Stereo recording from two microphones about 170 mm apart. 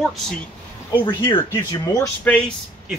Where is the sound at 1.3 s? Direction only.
20° left (ahead or behind).